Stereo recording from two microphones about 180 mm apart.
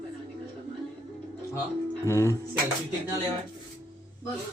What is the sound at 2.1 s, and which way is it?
Speech, 15° left (ahead or behind).